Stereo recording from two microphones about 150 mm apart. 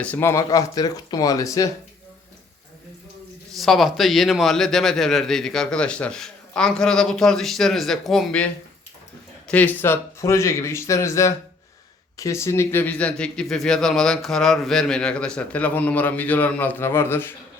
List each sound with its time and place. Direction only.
0.0 s speech: 15° left (ahead or behind)
3.5 s a man's voice: centre (ahead or behind)
9.5 s speech: 10° left (ahead or behind)